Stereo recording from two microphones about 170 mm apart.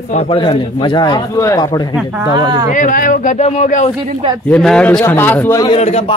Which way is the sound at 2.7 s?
50° left (ahead or behind).